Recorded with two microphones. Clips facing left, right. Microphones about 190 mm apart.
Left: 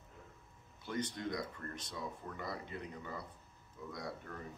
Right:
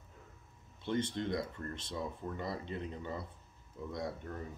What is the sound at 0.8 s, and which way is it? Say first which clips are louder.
Speech: right 5 dB; 25° right (ahead or behind).